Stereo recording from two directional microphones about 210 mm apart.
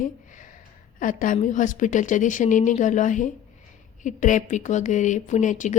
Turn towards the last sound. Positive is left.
turn(degrees=35)  # may be behind; listen again after turning